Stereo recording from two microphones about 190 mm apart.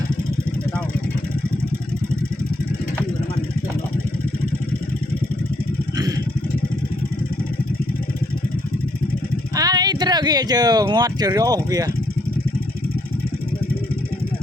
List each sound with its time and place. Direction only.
9.6 s speech: 20° right (ahead or behind)